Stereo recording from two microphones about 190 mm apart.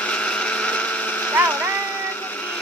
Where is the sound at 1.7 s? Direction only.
10° left (ahead or behind).